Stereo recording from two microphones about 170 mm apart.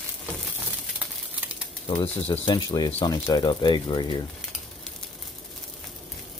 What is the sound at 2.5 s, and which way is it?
Speech, 30° left (ahead or behind).